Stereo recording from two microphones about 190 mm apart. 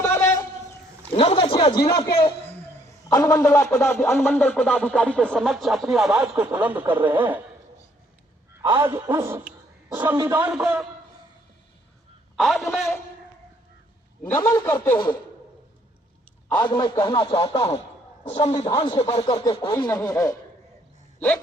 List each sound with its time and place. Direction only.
0.0 s a sound: 15° left (ahead or behind)
1.1 s a man's voice: 30° left (ahead or behind)
2.5 s speech: 10° left (ahead or behind); by 7.4 s 10° right (ahead or behind)
8.6 s a man's voice: 10° right (ahead or behind)
12.4 s speech: centre (ahead or behind)
14.4 s speech: 15° left (ahead or behind)
14.9 s speech: 25° left (ahead or behind)
16.6 s speech: 25° left (ahead or behind)